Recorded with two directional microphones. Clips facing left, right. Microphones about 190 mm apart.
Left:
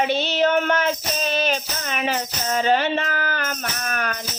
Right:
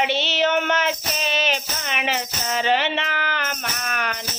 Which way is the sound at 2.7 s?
45° left (ahead or behind).